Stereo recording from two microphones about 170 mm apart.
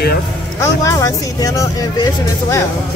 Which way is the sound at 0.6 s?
20° left (ahead or behind).